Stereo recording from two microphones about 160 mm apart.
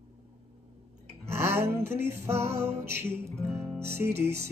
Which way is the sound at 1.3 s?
15° right (ahead or behind).